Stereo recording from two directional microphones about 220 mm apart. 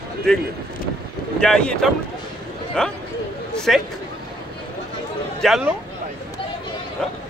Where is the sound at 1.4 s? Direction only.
5° left (ahead or behind).